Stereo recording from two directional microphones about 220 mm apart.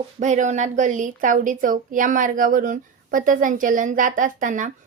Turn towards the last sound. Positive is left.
turn(degrees=-35)  # may be behind; listen again after turning